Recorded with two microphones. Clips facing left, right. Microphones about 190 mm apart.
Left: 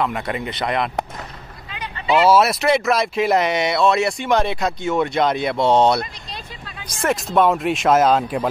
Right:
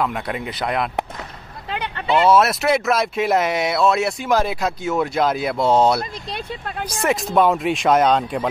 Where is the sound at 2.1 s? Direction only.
Centre (ahead or behind).